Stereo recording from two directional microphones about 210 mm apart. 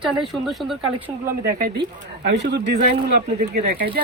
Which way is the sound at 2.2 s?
55° right (ahead or behind).